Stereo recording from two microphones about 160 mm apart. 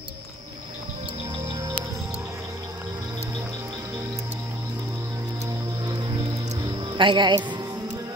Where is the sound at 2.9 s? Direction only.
25° right (ahead or behind).